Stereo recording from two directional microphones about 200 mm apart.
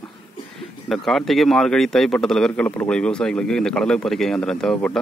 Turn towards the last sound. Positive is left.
turn(degrees=5)  # may be behind; listen again after turning